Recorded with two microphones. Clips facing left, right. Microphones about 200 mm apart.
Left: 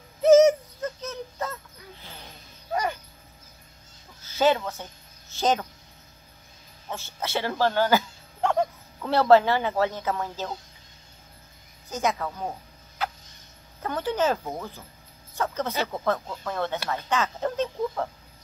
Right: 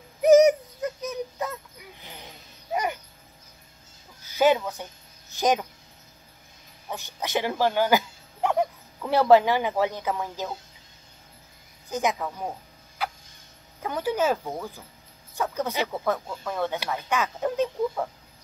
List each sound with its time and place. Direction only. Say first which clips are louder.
0.2 s a sound: even; 15° right (ahead or behind)
4.2 s music: right 1 dB; 15° right (ahead or behind)
5.3 s speech: right 1 dB; 15° right (ahead or behind)
6.9 s speech: right 1 dB; 15° right (ahead or behind)
11.9 s speech: right 1 dB; 15° right (ahead or behind)
13.0 s a sound: even; 10° right (ahead or behind)
13.8 s speech: even; 10° right (ahead or behind)
15.5 s speech: right 1 dB; 15° right (ahead or behind)